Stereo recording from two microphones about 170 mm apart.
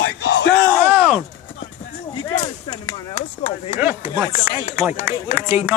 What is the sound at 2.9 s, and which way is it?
Chop, 30° left (ahead or behind).